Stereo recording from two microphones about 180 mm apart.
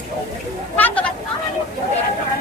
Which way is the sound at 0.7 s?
10° left (ahead or behind).